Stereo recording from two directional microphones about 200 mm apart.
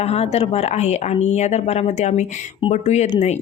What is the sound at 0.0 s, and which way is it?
Speech, 30° left (ahead or behind).